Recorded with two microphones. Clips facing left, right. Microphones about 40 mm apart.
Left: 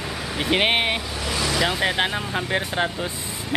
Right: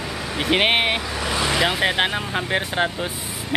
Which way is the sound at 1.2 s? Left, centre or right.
Right.